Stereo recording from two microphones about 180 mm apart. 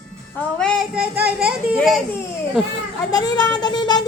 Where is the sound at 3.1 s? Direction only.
20° left (ahead or behind).